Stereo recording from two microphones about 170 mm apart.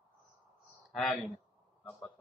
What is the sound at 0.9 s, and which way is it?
Speech, centre (ahead or behind).